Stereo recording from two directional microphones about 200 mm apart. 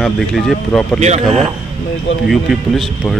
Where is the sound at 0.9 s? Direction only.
35° right (ahead or behind).